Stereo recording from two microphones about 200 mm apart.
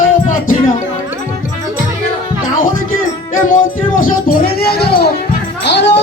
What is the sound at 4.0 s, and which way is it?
Music, 45° left (ahead or behind).